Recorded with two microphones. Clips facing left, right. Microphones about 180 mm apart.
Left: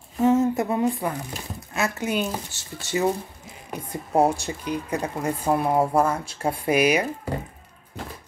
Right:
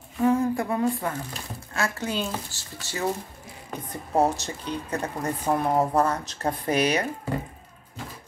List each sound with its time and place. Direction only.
0.2 s speech: 20° left (ahead or behind)